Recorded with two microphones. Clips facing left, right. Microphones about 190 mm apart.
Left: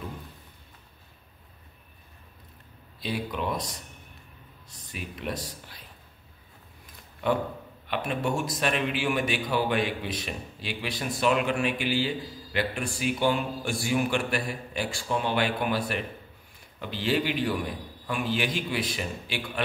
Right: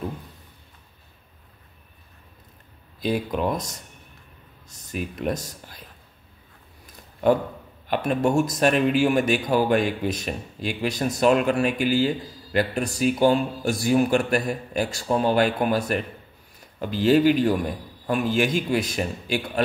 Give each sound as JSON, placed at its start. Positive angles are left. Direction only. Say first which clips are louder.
{"t": 3.0, "sound": "a man's voice", "louder": "right 7 dB", "side_deg": -45}
{"t": 7.9, "sound": "a man's voice", "louder": "right 7 dB", "side_deg": -40}